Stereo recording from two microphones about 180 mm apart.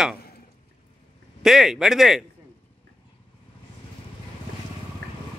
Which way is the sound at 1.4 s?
Centre (ahead or behind).